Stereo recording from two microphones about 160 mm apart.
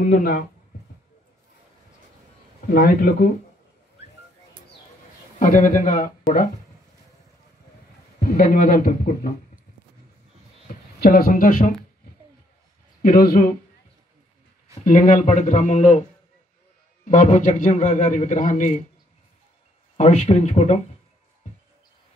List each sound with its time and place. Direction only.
0.0 s a man's voice: 60° left (ahead or behind)
2.6 s a man's voice: 60° left (ahead or behind)
5.4 s a man's voice: 55° left (ahead or behind)
8.2 s a man's voice: 60° left (ahead or behind)
11.0 s a man's voice: 65° left (ahead or behind)
13.0 s a man's voice: 65° left (ahead or behind)
14.9 s a man's voice: 55° left (ahead or behind)
20.0 s a man's voice: 45° left (ahead or behind)